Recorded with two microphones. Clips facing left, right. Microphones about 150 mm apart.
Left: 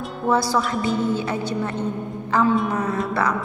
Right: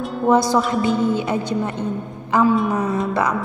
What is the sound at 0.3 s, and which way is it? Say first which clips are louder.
Speech: right 4 dB; 20° right (ahead or behind).